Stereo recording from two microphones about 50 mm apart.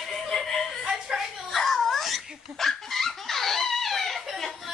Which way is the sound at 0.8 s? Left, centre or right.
Centre.